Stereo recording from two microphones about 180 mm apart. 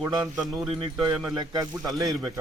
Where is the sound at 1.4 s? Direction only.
20° right (ahead or behind).